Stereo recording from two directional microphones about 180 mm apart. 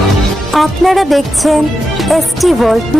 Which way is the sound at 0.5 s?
Centre (ahead or behind).